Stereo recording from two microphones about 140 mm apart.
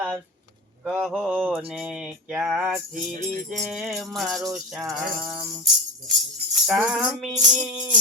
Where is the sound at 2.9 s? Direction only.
75° right (ahead or behind).